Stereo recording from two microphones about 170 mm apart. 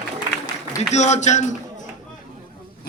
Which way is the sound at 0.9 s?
45° left (ahead or behind).